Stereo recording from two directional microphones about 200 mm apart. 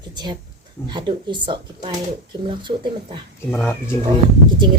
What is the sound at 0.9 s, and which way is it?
Speech, 25° right (ahead or behind).